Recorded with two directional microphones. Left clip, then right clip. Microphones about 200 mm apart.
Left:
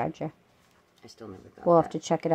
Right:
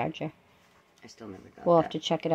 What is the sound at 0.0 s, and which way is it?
Speech, 5° left (ahead or behind).